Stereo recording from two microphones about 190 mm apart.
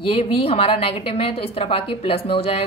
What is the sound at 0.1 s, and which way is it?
A woman's voice, 30° left (ahead or behind).